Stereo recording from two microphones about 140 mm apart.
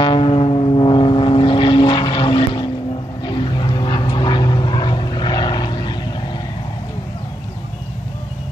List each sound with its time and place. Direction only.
0.0 s vehicle: 40° left (ahead or behind)